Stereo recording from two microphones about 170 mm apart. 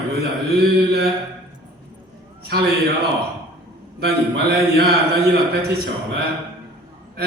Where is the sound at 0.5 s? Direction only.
70° right (ahead or behind).